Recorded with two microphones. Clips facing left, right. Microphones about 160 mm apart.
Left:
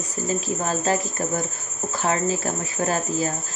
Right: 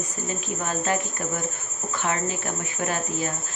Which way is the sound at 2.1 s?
35° left (ahead or behind).